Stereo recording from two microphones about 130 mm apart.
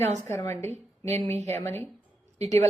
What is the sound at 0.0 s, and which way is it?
Speech, 55° right (ahead or behind).